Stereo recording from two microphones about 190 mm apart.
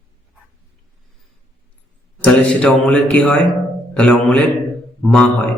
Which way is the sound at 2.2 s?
5° left (ahead or behind).